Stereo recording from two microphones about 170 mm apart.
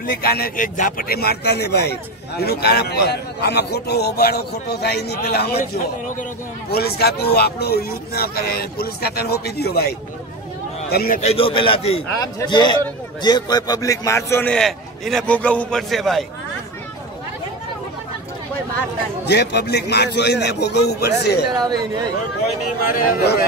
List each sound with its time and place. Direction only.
0.0 s speech: 60° left (ahead or behind)
6.7 s a man's voice: 70° left (ahead or behind)
11.1 s speech: 35° left (ahead or behind)
12.2 s a man's voice: 25° left (ahead or behind); by 16.3 s centre (ahead or behind)
19.2 s speech: 75° left (ahead or behind)
21.5 s speech: 25° right (ahead or behind)
22.9 s a man's voice: 60° left (ahead or behind)